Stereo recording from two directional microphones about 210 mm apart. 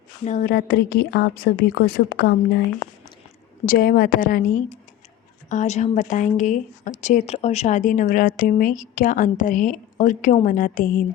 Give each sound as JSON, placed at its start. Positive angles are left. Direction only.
{"t": 0.3, "sound": "a woman's voice", "side_deg": 40}
{"t": 3.7, "sound": "a woman's voice", "side_deg": 45}